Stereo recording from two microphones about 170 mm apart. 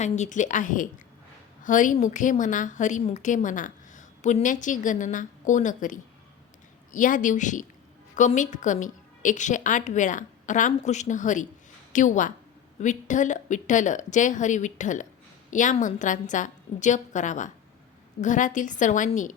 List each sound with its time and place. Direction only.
0.0 s a woman's voice: 45° left (ahead or behind)